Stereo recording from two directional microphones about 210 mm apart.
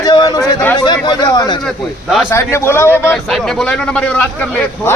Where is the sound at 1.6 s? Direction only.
Centre (ahead or behind).